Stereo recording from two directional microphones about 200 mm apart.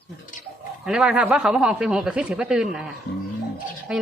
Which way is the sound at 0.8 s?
5° right (ahead or behind).